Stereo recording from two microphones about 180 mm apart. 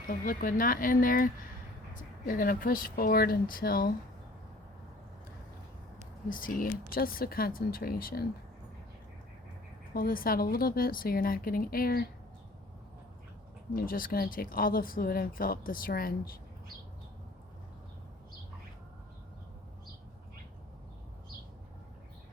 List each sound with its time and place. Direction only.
0.1 s speech: 50° left (ahead or behind)
6.2 s speech: 50° left (ahead or behind)
9.9 s speech: 55° left (ahead or behind)
13.7 s speech: 55° left (ahead or behind)